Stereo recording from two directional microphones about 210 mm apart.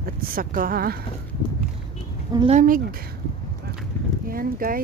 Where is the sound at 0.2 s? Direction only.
40° right (ahead or behind).